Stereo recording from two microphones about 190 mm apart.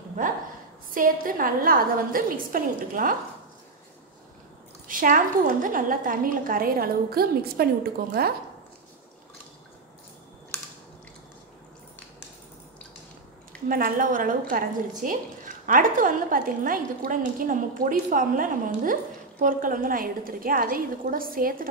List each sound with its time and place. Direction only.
0.9 s a woman's voice: 45° right (ahead or behind)
4.8 s a woman's voice: 45° right (ahead or behind)
13.7 s a woman's voice: 50° right (ahead or behind)